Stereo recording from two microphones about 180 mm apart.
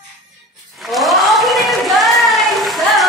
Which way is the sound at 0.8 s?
Centre (ahead or behind).